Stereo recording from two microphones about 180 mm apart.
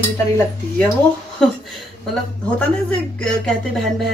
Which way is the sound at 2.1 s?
5° left (ahead or behind).